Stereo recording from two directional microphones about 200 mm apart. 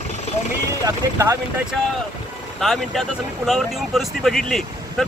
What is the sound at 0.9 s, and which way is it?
Speech, 15° right (ahead or behind).